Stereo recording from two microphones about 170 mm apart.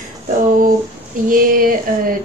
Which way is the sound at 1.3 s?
55° right (ahead or behind).